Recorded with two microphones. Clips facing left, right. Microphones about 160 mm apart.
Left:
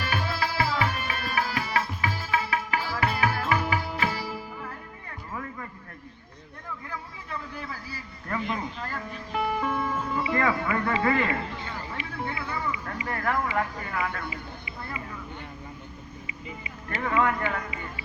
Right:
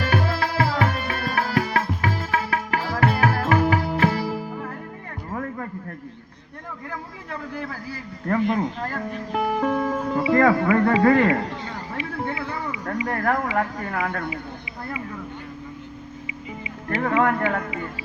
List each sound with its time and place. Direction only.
0.0 s tabla: 50° right (ahead or behind)
5.3 s music: 50° right (ahead or behind)
6.9 s a sound: 55° right (ahead or behind)
13.1 s speech: 50° right (ahead or behind)
16.9 s speech: 55° right (ahead or behind)